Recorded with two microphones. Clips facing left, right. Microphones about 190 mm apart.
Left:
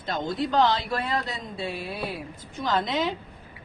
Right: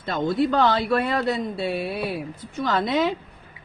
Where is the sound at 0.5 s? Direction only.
55° right (ahead or behind).